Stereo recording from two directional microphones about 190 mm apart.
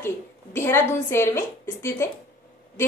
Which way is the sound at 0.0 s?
10° left (ahead or behind).